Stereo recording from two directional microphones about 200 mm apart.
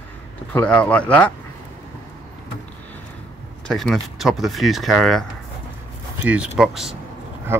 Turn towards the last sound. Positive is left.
turn(degrees=-10)  # may be behind; listen again after turning